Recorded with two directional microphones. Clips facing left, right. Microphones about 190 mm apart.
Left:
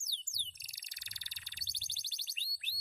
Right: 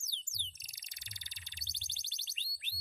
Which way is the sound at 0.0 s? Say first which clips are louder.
Right 1 dB; 20° right (ahead or behind).